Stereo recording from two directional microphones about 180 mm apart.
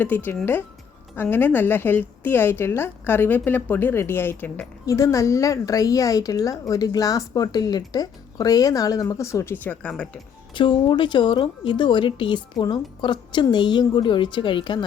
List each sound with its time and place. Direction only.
0.0 s a woman's voice: 10° left (ahead or behind)
10.5 s a woman's voice: 25° left (ahead or behind)